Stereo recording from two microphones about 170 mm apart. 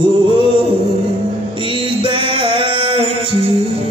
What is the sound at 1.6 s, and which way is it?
Music, 30° right (ahead or behind).